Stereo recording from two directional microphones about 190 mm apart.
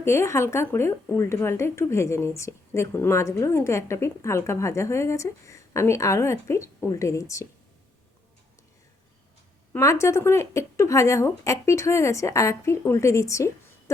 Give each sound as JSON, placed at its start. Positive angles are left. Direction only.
{"t": 0.0, "sound": "speech", "side_deg": 15}
{"t": 9.7, "sound": "speech", "side_deg": 15}